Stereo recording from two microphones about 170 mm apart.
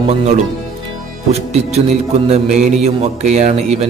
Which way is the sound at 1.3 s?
40° right (ahead or behind).